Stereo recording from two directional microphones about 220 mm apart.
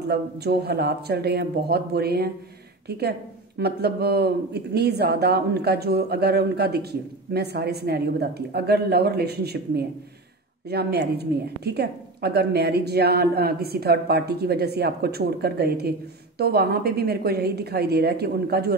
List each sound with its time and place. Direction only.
0.1 s speech: 45° right (ahead or behind)